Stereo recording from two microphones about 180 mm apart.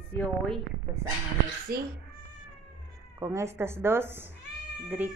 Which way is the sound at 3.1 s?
15° right (ahead or behind).